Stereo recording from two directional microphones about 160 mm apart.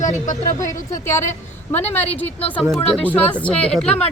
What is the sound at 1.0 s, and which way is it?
Speech, 15° left (ahead or behind).